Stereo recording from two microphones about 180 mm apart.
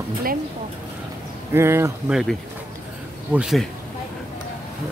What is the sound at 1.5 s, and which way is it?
Speech, 15° right (ahead or behind).